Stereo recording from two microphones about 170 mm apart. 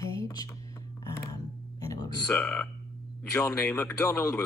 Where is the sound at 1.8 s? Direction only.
20° left (ahead or behind).